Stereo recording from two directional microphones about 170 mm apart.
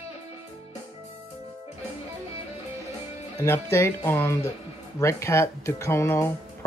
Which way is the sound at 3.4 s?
15° left (ahead or behind).